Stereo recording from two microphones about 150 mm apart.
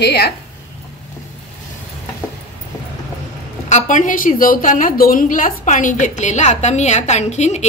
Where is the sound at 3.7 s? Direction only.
55° left (ahead or behind).